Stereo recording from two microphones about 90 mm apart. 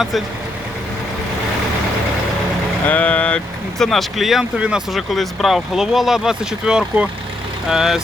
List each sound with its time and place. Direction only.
2.8 s speech: 15° left (ahead or behind); by 4.8 s 10° right (ahead or behind)
4.9 s speech: centre (ahead or behind)